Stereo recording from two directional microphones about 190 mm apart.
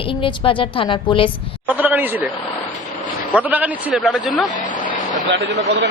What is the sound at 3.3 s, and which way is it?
Speech, 10° right (ahead or behind).